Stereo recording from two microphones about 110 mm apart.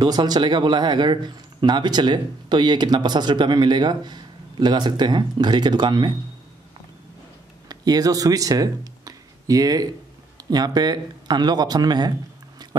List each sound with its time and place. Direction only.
0.0 s speech: 35° right (ahead or behind)
7.6 s speech: 35° right (ahead or behind)